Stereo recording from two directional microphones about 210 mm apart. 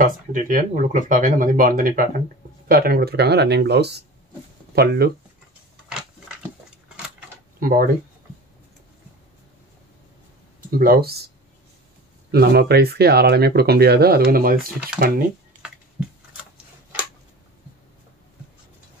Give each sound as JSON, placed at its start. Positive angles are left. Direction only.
{"t": 0.0, "sound": "speech", "side_deg": -40}
{"t": 7.6, "sound": "speech", "side_deg": -40}
{"t": 10.8, "sound": "speech", "side_deg": -45}
{"t": 12.3, "sound": "speech", "side_deg": -50}